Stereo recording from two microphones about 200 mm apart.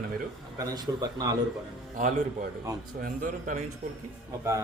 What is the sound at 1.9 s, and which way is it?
A man's voice, 40° right (ahead or behind).